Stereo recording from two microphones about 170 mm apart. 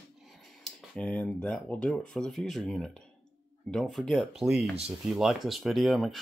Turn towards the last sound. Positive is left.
turn(degrees=0)  # may be behind; listen again after turning